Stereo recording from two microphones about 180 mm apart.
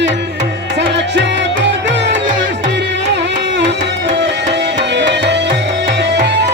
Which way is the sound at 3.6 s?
75° right (ahead or behind).